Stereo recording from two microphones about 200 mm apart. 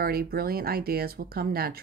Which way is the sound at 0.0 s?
50° right (ahead or behind).